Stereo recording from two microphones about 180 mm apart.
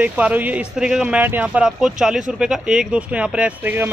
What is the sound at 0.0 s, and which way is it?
Speech, 10° right (ahead or behind).